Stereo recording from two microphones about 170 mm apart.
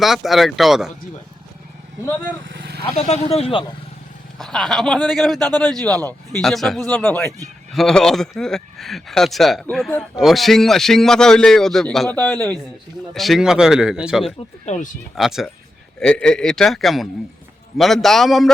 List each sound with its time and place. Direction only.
0.0 s speech: centre (ahead or behind)
2.5 s vehicle: 70° right (ahead or behind)
2.8 s speech: 35° left (ahead or behind)
4.4 s speech: centre (ahead or behind)
5.4 s a man's voice: 25° right (ahead or behind)
6.4 s speech: centre (ahead or behind)
14.6 s speech: 45° left (ahead or behind)
15.1 s speech: centre (ahead or behind)